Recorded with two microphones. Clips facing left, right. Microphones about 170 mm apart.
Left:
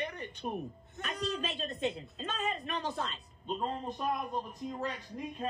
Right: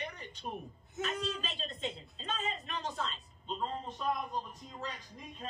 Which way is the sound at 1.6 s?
60° left (ahead or behind).